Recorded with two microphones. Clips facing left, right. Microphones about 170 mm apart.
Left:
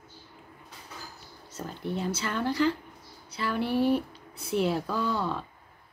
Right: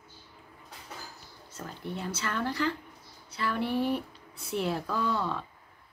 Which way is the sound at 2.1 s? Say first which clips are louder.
Left 2 dB; 15° left (ahead or behind).